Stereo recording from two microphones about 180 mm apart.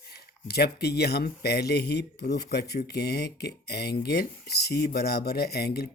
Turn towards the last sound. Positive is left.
turn(degrees=60)  # may be behind; listen again after turning